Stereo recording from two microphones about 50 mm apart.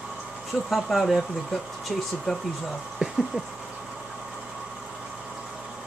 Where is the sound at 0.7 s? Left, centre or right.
Centre.